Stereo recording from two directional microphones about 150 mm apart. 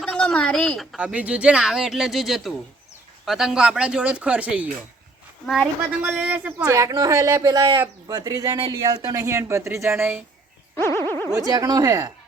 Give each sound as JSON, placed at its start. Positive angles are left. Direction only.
{"t": 0.0, "sound": "speech", "side_deg": 5}
{"t": 6.0, "sound": "speech", "side_deg": -15}
{"t": 6.7, "sound": "a woman's voice", "side_deg": -25}
{"t": 10.8, "sound": "boing", "side_deg": 15}
{"t": 11.1, "sound": "a sound", "side_deg": 15}
{"t": 11.3, "sound": "a woman's voice", "side_deg": -25}